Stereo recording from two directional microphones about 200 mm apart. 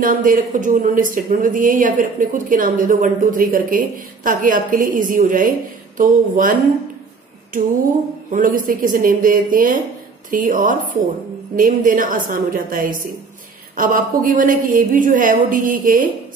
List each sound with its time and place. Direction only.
0.0 s speech: 45° right (ahead or behind)
8.3 s speech: 40° right (ahead or behind)